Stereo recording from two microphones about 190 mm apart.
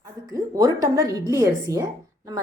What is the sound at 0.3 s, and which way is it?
A woman's voice, 20° right (ahead or behind).